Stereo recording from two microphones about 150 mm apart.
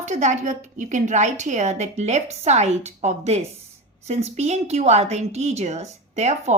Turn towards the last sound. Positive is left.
turn(degrees=-50)  # may be behind; listen again after turning